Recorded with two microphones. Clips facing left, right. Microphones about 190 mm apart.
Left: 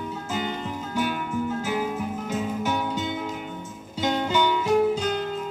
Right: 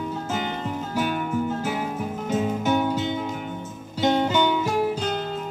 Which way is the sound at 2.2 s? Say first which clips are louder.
Right 6 dB; 55° right (ahead or behind).